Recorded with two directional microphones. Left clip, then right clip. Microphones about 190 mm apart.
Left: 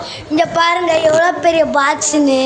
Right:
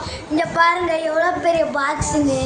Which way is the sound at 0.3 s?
25° left (ahead or behind).